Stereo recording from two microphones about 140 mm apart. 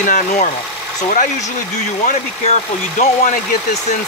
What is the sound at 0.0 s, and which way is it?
Speech, 65° left (ahead or behind).